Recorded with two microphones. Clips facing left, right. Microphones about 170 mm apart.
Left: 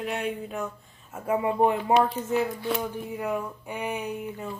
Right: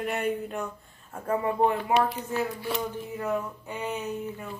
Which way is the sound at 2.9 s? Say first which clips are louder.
Even; 10° left (ahead or behind).